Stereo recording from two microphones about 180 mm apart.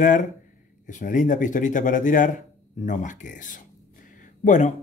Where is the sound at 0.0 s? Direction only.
45° left (ahead or behind).